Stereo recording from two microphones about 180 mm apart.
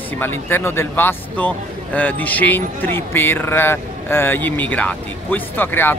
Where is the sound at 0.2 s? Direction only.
10° left (ahead or behind).